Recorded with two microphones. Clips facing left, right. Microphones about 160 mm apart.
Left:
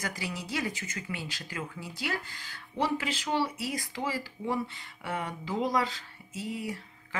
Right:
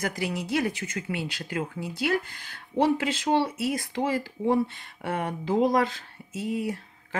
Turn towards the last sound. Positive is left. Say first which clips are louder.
# right 6 dB
turn(degrees=-60)  # may be behind; listen again after turning